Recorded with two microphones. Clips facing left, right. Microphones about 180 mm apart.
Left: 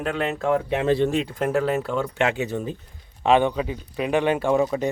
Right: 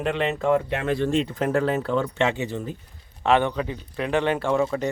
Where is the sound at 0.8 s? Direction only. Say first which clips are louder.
Left 4 dB; 25° left (ahead or behind).